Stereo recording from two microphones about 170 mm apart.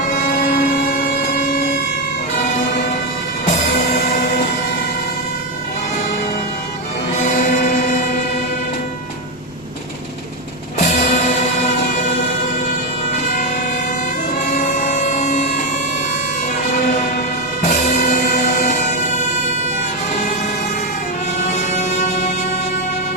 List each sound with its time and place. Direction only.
0.1 s music: 55° left (ahead or behind)
7.1 s music: 45° left (ahead or behind)
10.8 s music: 70° left (ahead or behind)
11.1 s music: 45° left (ahead or behind)
14.5 s vehicle: 45° left (ahead or behind)
16.7 s music: 55° left (ahead or behind)
21.4 s music: 40° left (ahead or behind)